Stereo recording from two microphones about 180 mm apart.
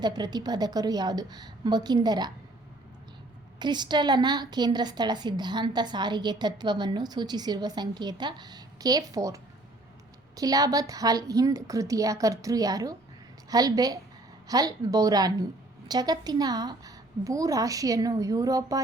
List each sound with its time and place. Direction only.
0.0 s a woman's voice: 25° right (ahead or behind)
3.6 s a woman's voice: 25° right (ahead or behind)